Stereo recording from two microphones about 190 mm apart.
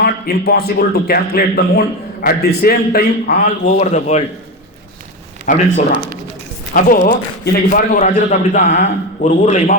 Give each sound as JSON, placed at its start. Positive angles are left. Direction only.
{"t": 0.0, "sound": "a man's voice", "side_deg": 55}
{"t": 5.5, "sound": "a man's voice", "side_deg": 45}